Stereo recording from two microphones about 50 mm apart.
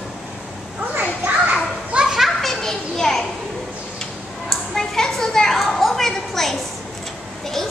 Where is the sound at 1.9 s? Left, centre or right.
Centre.